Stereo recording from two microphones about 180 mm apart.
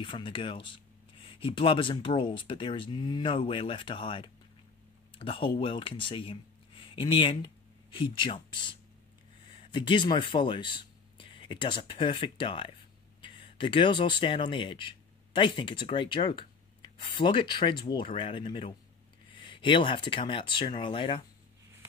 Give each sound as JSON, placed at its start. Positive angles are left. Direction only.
{"t": 0.0, "sound": "speech", "side_deg": 30}